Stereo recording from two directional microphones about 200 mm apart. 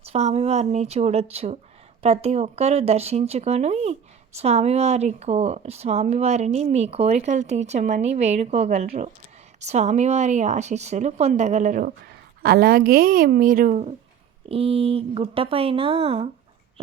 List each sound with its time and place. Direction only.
0.0 s speech: 30° right (ahead or behind)